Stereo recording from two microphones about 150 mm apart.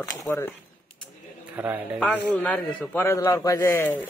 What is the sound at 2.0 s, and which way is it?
A man's voice, 10° left (ahead or behind).